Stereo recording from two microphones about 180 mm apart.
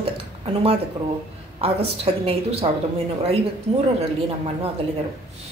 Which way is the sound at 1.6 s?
35° right (ahead or behind).